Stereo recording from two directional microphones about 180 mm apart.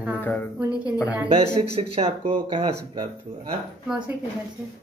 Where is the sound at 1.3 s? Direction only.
30° right (ahead or behind).